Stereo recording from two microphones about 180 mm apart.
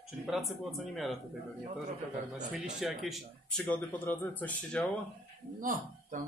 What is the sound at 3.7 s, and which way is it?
Speech, 10° left (ahead or behind).